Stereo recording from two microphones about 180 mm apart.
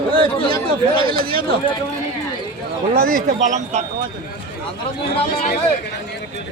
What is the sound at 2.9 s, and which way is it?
Speech, 55° right (ahead or behind).